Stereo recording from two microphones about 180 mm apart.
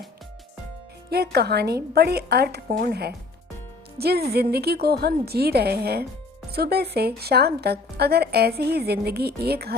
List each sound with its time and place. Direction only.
1.1 s a woman's voice: 60° right (ahead or behind)